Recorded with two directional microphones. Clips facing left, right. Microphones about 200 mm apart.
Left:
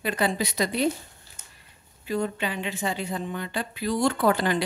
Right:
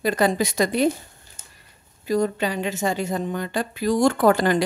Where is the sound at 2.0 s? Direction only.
40° right (ahead or behind).